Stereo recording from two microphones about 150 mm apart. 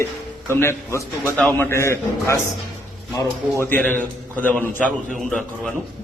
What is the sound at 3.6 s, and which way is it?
A man's voice, 10° left (ahead or behind).